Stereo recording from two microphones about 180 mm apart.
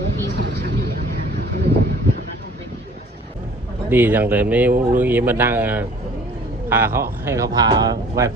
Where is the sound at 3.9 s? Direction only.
10° right (ahead or behind).